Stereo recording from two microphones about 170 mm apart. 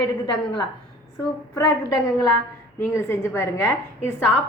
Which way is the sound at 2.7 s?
15° left (ahead or behind).